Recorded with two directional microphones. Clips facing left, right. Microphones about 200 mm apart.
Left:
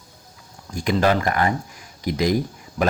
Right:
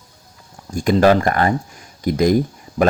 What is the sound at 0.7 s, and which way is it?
Speech, 45° right (ahead or behind).